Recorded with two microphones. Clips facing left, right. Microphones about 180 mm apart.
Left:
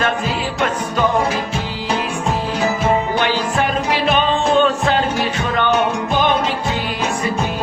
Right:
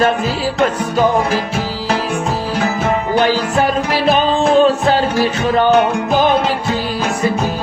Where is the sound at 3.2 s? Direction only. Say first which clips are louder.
Right 4 dB; 35° right (ahead or behind).